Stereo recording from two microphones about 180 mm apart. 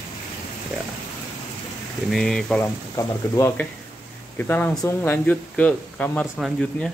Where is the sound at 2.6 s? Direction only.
15° left (ahead or behind).